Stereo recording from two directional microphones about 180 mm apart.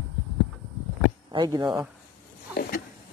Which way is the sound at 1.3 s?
20° right (ahead or behind).